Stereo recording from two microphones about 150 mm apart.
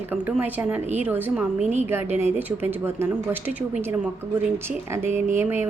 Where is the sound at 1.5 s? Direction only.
50° right (ahead or behind).